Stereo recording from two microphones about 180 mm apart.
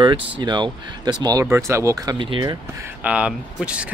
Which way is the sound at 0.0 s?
25° right (ahead or behind).